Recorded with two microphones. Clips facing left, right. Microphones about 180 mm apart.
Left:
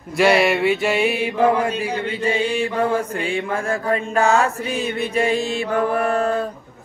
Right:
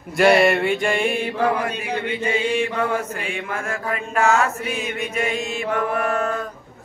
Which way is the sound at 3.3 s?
30° left (ahead or behind).